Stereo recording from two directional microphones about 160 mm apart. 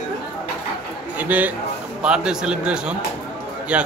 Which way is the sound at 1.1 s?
10° right (ahead or behind).